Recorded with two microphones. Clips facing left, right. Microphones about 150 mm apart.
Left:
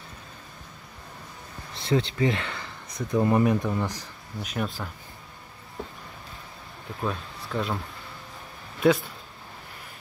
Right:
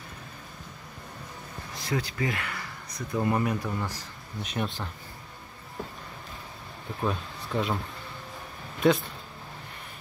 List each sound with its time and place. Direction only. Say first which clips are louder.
1.7 s a sound: left 6 dB; 25° left (ahead or behind)
3.1 s speech: left 5 dB; 20° left (ahead or behind)
4.4 s speech: left 1 dB; centre (ahead or behind)
7.0 s speech: right 1 dB; centre (ahead or behind)